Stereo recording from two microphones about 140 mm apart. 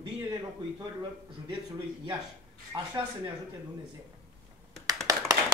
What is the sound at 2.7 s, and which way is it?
Speech, 30° right (ahead or behind).